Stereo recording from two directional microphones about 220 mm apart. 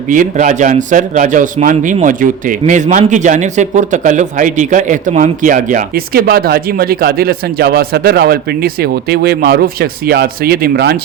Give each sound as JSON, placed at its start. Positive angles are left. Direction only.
{"t": 0.1, "sound": "a man's voice", "side_deg": -35}